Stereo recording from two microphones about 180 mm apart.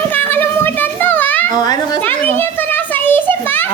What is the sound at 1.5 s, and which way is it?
Speech, 20° left (ahead or behind).